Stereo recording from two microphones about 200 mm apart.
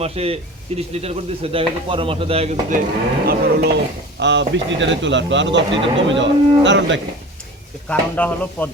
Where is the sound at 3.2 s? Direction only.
55° right (ahead or behind).